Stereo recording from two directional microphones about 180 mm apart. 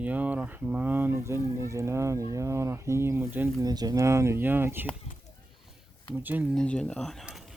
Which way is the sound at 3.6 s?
20° right (ahead or behind).